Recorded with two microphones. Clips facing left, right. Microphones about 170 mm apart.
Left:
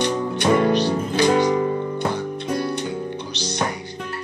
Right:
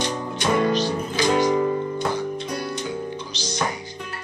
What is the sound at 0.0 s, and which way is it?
Music, 60° left (ahead or behind).